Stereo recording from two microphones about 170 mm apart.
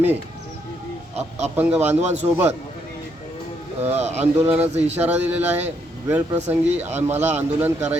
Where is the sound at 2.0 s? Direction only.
40° right (ahead or behind).